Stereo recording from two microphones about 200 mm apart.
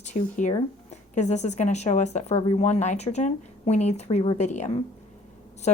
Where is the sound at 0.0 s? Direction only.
35° left (ahead or behind).